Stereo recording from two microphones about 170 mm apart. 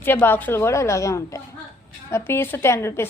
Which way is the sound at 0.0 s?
10° left (ahead or behind).